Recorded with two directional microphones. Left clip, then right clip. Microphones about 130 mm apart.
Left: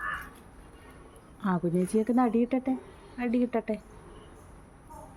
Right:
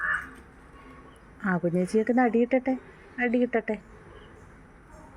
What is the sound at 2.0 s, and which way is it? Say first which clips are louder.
A woman's voice: right 4 dB; centre (ahead or behind).